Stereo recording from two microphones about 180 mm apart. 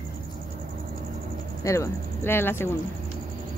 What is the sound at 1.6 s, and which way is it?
Speech, 15° left (ahead or behind).